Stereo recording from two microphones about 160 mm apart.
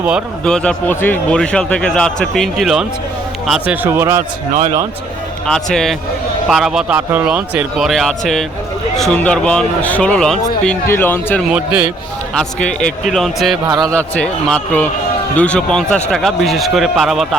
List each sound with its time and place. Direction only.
0.4 s a man's voice: 5° left (ahead or behind)
3.8 s a man's voice: 15° right (ahead or behind)
5.5 s a man's voice: 5° left (ahead or behind)
11.4 s a man's voice: 5° right (ahead or behind)
12.3 s a man's voice: 5° left (ahead or behind)
13.7 s a man's voice: 25° right (ahead or behind)
13.9 s a man's voice: 5° left (ahead or behind)